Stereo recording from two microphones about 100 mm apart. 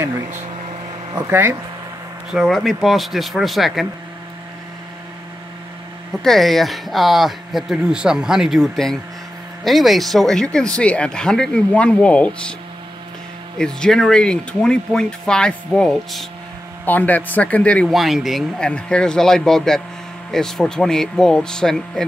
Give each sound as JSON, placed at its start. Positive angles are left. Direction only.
{"t": 1.3, "sound": "speech", "side_deg": -20}
{"t": 2.3, "sound": "speech", "side_deg": 0}
{"t": 6.1, "sound": "speech", "side_deg": 0}
{"t": 13.6, "sound": "speech", "side_deg": 5}
{"t": 16.8, "sound": "speech", "side_deg": 15}
{"t": 17.8, "sound": "speech", "side_deg": 0}